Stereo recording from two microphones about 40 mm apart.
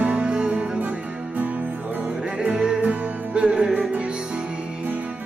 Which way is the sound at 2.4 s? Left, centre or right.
Right.